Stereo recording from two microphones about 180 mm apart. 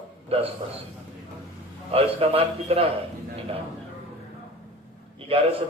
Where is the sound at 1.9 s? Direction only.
35° right (ahead or behind).